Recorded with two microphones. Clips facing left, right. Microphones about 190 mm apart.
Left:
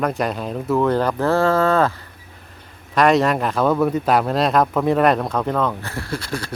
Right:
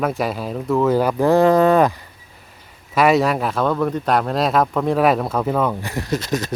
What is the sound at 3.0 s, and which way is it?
Speech, 5° right (ahead or behind).